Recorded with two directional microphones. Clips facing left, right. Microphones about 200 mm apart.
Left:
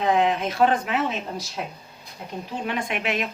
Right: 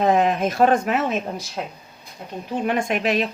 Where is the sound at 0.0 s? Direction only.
45° right (ahead or behind).